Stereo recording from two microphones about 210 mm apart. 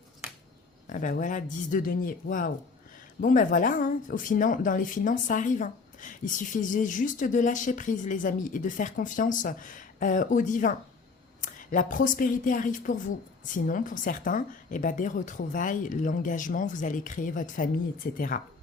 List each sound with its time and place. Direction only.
0.9 s speech: 40° left (ahead or behind)